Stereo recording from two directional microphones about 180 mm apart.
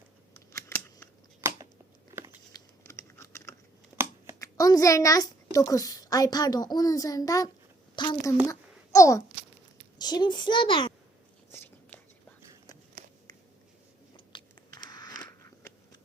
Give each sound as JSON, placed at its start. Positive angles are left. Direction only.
{"t": 0.5, "sound": "a sound", "side_deg": 10}
{"t": 1.4, "sound": "a sound", "side_deg": -15}
{"t": 2.5, "sound": "typing", "side_deg": 15}
{"t": 4.4, "sound": "a child's voice", "side_deg": 20}
{"t": 8.4, "sound": "wail", "side_deg": 15}
{"t": 10.0, "sound": "a child's voice", "side_deg": 25}
{"t": 11.5, "sound": "whispering", "side_deg": 15}
{"t": 14.3, "sound": "biting", "side_deg": 25}